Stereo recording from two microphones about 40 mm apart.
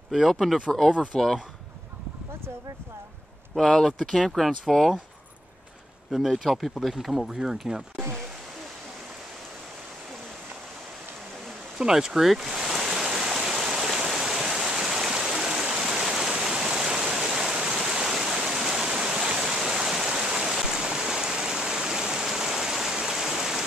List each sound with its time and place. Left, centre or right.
0.1 s speech: centre
3.5 s speech: centre
6.2 s speech: centre
11.8 s speech: centre
12.3 s stream: centre